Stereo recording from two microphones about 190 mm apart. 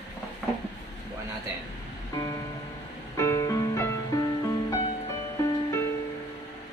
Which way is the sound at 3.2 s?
15° left (ahead or behind).